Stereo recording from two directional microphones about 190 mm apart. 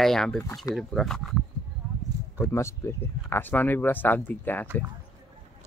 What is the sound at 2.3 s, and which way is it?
Speech, 15° left (ahead or behind).